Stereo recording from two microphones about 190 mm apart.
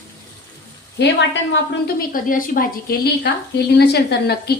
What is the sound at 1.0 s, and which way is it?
Speech, 70° left (ahead or behind).